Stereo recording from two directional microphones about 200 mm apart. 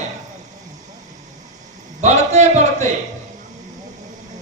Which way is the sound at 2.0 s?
35° right (ahead or behind).